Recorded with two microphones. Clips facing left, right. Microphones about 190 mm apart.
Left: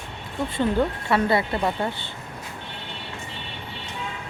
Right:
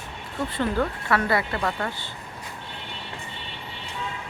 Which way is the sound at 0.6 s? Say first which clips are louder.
Left 3 dB; 20° left (ahead or behind).